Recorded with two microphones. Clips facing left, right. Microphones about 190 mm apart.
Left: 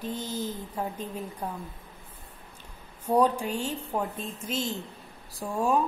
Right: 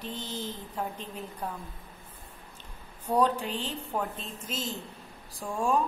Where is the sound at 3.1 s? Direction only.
10° left (ahead or behind).